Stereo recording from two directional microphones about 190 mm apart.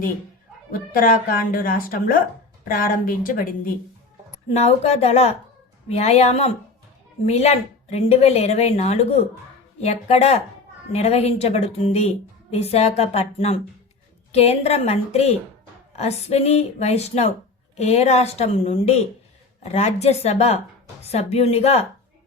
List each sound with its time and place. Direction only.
0.7 s speech: 50° left (ahead or behind)
4.5 s a woman's voice: 35° left (ahead or behind)